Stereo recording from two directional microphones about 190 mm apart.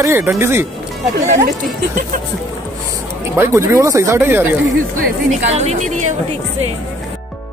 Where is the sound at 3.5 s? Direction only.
15° right (ahead or behind).